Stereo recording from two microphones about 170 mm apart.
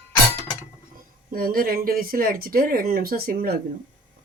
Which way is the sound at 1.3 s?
60° right (ahead or behind).